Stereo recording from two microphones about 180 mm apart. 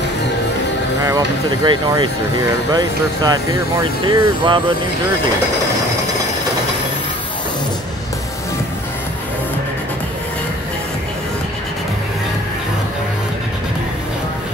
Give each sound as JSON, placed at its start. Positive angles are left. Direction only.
{"t": 1.0, "sound": "speech", "side_deg": -20}